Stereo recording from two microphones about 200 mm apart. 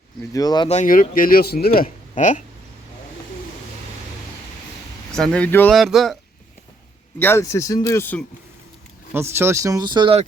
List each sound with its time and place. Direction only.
0.3 s speech: 20° left (ahead or behind)
0.7 s speech: 40° left (ahead or behind)
5.1 s speech: 5° left (ahead or behind)
7.2 s speech: 10° left (ahead or behind)
9.1 s speech: 10° right (ahead or behind)